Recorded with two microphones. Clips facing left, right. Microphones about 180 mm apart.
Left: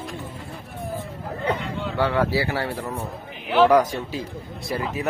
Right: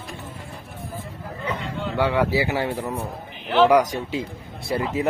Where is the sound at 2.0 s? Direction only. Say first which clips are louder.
Right 1 dB; 15° right (ahead or behind).